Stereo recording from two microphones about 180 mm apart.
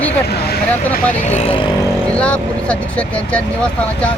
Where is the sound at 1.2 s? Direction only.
35° left (ahead or behind).